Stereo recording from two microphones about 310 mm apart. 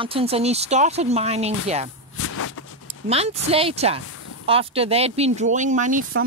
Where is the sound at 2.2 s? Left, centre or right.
Left.